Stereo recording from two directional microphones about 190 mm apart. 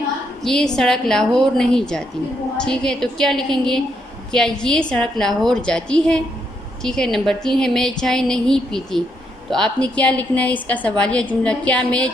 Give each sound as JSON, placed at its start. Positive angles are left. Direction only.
{"t": 0.4, "sound": "a woman's voice", "side_deg": 0}